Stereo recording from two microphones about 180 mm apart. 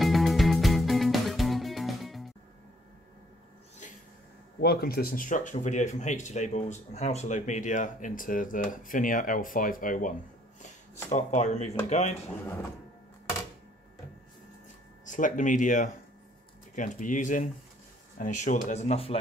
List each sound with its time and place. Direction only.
0.0 s music: centre (ahead or behind)
4.6 s speech: 60° left (ahead or behind); by 12.2 s 40° left (ahead or behind)
15.0 s speech: 45° left (ahead or behind)